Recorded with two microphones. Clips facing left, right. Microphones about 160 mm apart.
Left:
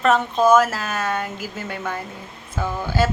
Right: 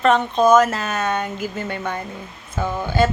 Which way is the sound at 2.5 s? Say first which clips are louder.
Right 2 dB; 15° right (ahead or behind).